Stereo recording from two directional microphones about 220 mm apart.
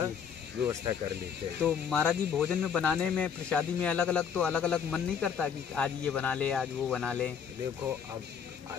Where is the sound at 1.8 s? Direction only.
5° left (ahead or behind).